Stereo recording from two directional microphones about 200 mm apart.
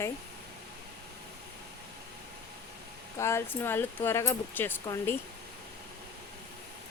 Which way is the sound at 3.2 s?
15° left (ahead or behind).